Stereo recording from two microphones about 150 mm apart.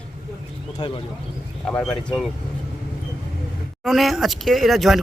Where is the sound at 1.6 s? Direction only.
5° left (ahead or behind).